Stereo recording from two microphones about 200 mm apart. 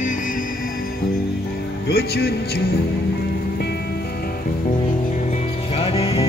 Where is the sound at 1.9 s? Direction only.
50° left (ahead or behind).